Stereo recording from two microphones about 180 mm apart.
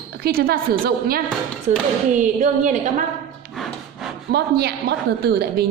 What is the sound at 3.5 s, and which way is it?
Wood, centre (ahead or behind).